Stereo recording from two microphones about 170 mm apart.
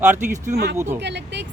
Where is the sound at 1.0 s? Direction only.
90° right.